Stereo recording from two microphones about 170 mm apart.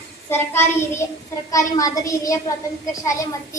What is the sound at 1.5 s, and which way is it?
Speech, 20° left (ahead or behind).